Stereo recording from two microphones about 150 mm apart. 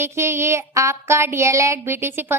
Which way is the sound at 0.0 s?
15° right (ahead or behind).